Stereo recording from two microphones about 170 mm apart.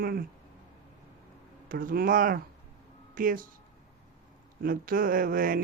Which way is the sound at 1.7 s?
55° right (ahead or behind).